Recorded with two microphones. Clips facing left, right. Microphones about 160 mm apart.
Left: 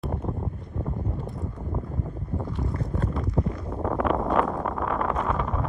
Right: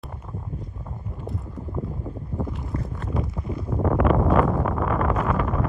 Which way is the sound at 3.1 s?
5° right (ahead or behind).